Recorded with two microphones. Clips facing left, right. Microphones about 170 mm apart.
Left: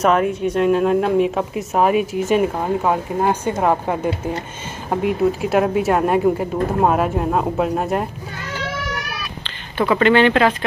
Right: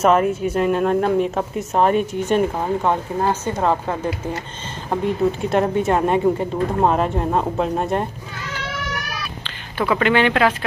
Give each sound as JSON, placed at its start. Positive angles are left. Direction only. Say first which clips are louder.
{"t": 0.0, "sound": "speech", "louder": "even", "side_deg": -5}
{"t": 9.8, "sound": "speech", "louder": "left 3 dB", "side_deg": -5}